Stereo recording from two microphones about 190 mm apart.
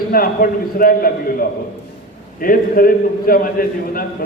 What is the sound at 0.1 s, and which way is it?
Speech, 50° left (ahead or behind).